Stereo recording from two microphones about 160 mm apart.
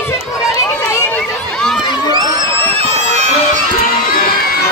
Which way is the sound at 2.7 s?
40° right (ahead or behind).